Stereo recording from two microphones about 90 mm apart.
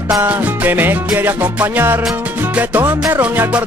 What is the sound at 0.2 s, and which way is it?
Music, 20° right (ahead or behind).